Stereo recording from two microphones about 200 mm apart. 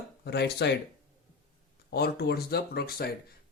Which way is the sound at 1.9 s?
55° left (ahead or behind).